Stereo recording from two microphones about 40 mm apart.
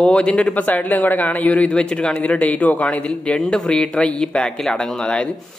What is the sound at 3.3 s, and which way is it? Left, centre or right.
A man's voice, left.